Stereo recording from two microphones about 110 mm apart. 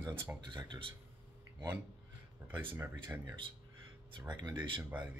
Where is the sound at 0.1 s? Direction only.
20° right (ahead or behind).